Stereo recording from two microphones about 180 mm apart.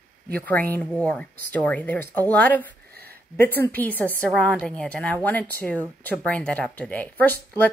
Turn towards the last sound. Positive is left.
turn(degrees=10)  # may be behind; listen again after turning